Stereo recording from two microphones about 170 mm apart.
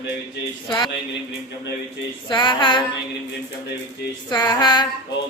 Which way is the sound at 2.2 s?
30° left (ahead or behind).